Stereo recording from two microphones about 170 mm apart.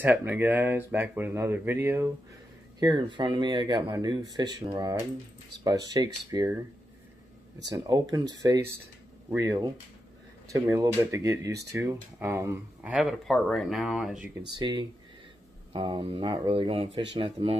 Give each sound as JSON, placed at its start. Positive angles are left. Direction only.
{"t": 0.2, "sound": "speech", "side_deg": -10}
{"t": 2.8, "sound": "speech", "side_deg": -25}
{"t": 7.6, "sound": "speech", "side_deg": -20}
{"t": 14.6, "sound": "speech", "side_deg": -25}